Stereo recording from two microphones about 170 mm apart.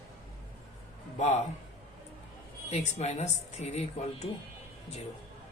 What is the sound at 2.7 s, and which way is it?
Speech, 40° left (ahead or behind).